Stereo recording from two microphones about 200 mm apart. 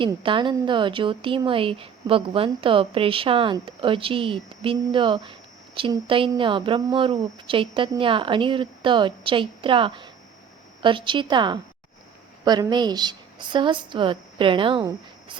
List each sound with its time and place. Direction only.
0.0 s speech: 25° right (ahead or behind)